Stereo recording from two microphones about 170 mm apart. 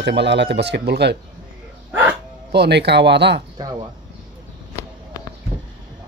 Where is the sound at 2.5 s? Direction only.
80° right.